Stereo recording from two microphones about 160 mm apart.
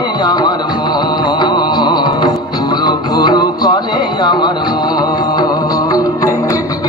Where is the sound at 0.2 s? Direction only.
25° left (ahead or behind).